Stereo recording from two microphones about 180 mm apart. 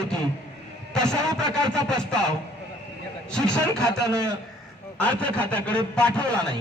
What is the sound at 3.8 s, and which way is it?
Speech, 15° right (ahead or behind).